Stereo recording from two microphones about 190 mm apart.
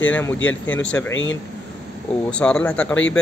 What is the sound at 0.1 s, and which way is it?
Speech, 10° left (ahead or behind).